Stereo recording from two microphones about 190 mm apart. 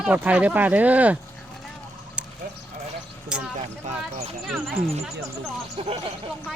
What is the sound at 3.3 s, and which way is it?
Speech, 5° right (ahead or behind).